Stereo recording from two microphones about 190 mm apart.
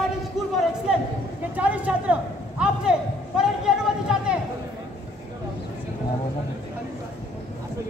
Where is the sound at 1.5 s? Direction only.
5° right (ahead or behind).